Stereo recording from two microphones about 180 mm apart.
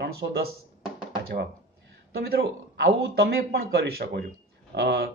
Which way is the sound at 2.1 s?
60° right (ahead or behind).